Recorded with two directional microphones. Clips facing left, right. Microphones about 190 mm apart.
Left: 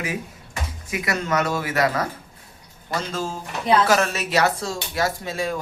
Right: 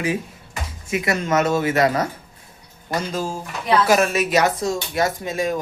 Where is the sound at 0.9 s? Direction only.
25° right (ahead or behind).